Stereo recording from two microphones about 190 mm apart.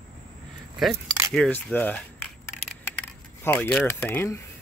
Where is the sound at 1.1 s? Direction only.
15° right (ahead or behind).